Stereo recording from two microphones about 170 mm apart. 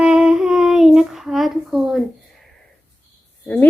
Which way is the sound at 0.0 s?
5° right (ahead or behind).